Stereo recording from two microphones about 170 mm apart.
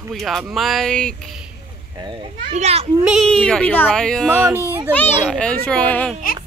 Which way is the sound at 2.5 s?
40° right (ahead or behind).